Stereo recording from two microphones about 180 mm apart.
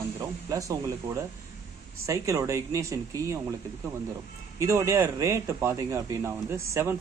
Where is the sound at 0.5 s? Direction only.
20° right (ahead or behind).